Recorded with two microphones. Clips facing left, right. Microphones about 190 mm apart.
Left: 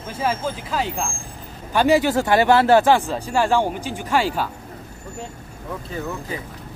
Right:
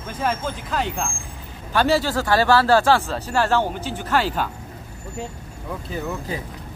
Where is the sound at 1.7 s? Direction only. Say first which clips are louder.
Left 3 dB; 15° left (ahead or behind).